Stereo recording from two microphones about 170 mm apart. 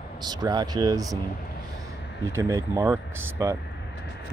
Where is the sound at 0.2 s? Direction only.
25° right (ahead or behind).